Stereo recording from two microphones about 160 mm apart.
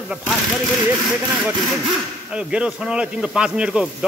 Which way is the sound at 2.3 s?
5° right (ahead or behind).